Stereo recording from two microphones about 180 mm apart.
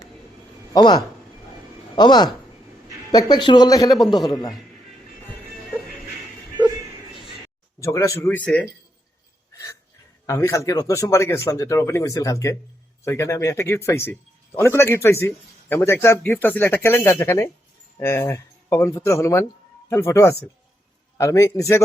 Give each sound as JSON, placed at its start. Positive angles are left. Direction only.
{"t": 0.7, "sound": "speech", "side_deg": 20}
{"t": 7.8, "sound": "speech", "side_deg": 15}
{"t": 10.2, "sound": "speech", "side_deg": 15}